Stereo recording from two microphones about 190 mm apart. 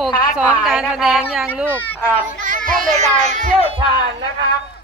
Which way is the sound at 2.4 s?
45° right (ahead or behind).